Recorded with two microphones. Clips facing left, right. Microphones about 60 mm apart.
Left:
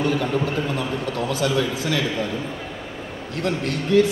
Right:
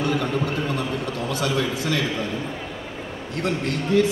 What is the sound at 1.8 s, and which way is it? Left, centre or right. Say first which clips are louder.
Speech: left 1 dB; right.